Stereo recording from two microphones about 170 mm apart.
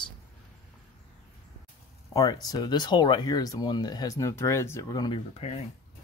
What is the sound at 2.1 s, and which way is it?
Speech, 20° left (ahead or behind).